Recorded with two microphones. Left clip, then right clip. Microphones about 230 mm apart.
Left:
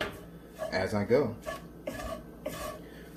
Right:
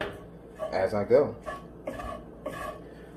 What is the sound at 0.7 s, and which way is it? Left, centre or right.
Speech, left.